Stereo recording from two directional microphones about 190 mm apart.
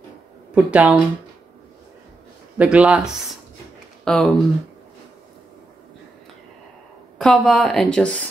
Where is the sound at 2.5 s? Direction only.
5° right (ahead or behind).